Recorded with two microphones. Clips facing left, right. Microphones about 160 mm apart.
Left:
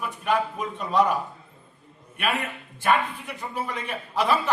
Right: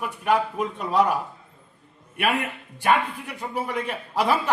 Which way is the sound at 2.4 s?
10° right (ahead or behind).